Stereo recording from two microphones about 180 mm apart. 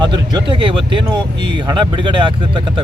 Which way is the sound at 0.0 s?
25° right (ahead or behind).